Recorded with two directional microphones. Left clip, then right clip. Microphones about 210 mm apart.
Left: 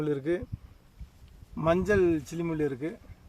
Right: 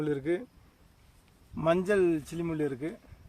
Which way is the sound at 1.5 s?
5° right (ahead or behind).